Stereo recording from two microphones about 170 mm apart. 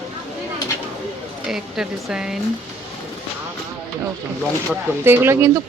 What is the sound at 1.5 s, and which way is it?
Speech, centre (ahead or behind).